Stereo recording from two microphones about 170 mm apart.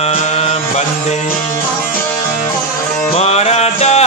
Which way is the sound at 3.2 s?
40° left (ahead or behind).